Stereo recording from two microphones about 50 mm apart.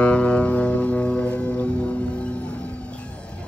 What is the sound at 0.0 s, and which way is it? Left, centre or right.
Music, left.